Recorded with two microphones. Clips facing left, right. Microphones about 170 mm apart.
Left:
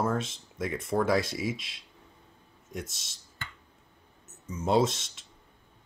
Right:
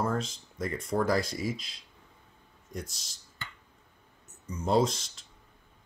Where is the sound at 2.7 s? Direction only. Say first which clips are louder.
Left 1 dB; centre (ahead or behind).